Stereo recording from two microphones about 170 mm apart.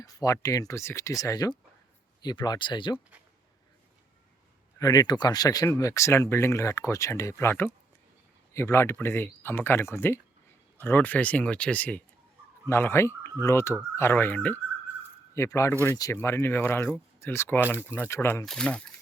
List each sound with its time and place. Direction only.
0.0 s speech: 20° left (ahead or behind)
4.8 s speech: 20° left (ahead or behind)
18.4 s speech: 5° left (ahead or behind)